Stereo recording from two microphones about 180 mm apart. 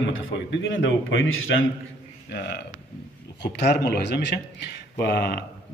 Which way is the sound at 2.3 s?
70° left (ahead or behind).